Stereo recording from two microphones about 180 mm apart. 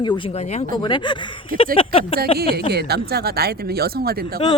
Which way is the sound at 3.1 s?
60° right (ahead or behind).